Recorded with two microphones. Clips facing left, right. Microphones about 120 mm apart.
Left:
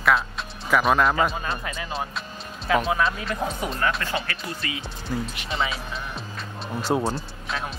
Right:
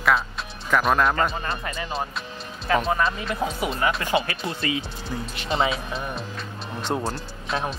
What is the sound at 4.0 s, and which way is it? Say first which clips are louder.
Speech: right 5 dB; 20° right (ahead or behind).